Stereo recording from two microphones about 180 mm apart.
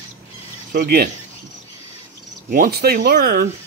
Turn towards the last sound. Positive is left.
turn(degrees=-55)  # may be behind; listen again after turning